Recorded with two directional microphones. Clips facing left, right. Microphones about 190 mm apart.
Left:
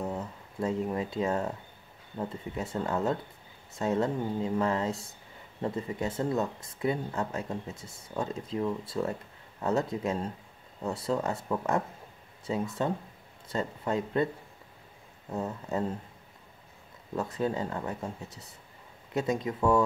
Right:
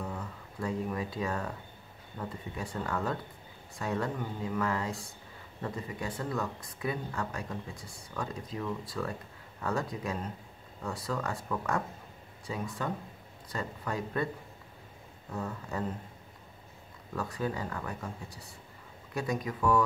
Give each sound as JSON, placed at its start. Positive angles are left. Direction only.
{"t": 0.0, "sound": "speech", "side_deg": 25}
{"t": 15.3, "sound": "speech", "side_deg": 25}
{"t": 17.1, "sound": "speech", "side_deg": 25}